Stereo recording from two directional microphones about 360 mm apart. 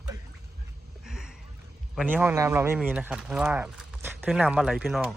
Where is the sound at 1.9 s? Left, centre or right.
Centre.